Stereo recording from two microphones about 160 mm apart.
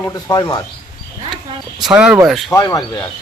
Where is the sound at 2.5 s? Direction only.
25° left (ahead or behind).